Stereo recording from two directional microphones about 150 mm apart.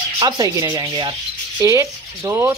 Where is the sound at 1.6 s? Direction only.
20° right (ahead or behind).